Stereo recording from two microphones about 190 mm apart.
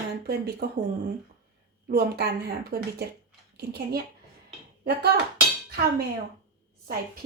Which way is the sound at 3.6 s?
55° right (ahead or behind).